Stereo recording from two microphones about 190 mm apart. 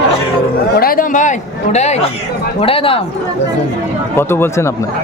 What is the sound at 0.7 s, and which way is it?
Speech, 50° left (ahead or behind).